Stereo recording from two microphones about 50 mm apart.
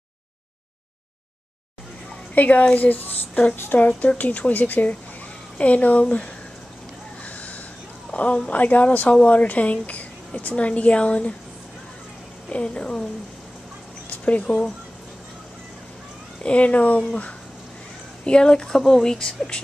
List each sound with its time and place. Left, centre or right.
2.3 s speech: left
3.5 s speech: left
7.2 s a sound: left
8.1 s a woman's voice: left
12.4 s speech: left
14.0 s a sound: left
14.4 s a woman's voice: centre
16.4 s speech: left
18.2 s a woman's voice: centre